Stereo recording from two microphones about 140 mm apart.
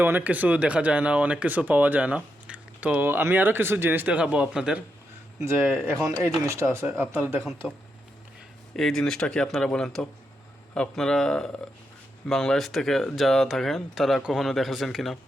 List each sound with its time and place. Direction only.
0.0 s speech: 15° right (ahead or behind)
5.6 s speech: 20° right (ahead or behind)
7.6 s speech: 5° left (ahead or behind)